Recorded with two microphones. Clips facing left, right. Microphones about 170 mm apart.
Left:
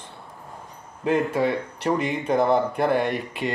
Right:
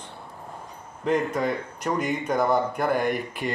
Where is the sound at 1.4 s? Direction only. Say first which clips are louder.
Left 3 dB; 30° left (ahead or behind).